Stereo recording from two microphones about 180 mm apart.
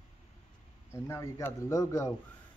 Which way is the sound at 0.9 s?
15° left (ahead or behind).